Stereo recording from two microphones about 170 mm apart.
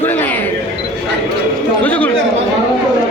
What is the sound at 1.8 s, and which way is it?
Speech, 10° left (ahead or behind).